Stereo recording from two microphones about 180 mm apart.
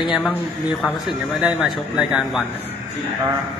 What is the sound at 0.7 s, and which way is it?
Speech, centre (ahead or behind).